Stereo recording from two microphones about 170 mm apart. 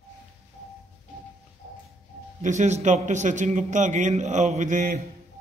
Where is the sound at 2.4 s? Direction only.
45° right (ahead or behind).